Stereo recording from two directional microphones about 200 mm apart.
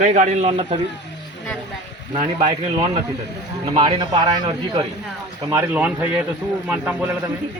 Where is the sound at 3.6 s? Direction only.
25° right (ahead or behind).